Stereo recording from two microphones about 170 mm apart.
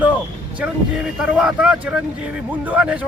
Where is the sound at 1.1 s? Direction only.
5° right (ahead or behind).